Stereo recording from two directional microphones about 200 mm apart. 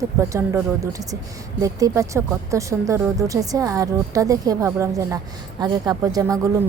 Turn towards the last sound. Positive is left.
turn(degrees=-15)  # may be behind; listen again after turning